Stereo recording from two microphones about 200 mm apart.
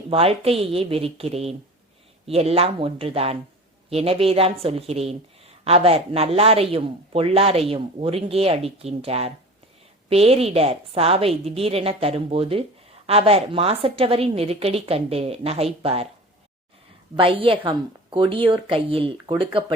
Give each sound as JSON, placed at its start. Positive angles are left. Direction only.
{"t": 0.1, "sound": "speech", "side_deg": -30}
{"t": 17.2, "sound": "speech", "side_deg": -25}